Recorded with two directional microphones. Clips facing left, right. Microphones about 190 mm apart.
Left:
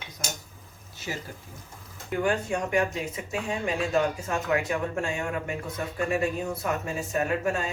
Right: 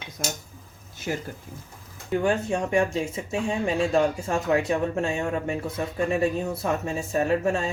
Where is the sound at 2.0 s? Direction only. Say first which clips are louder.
Right 3 dB; 25° right (ahead or behind).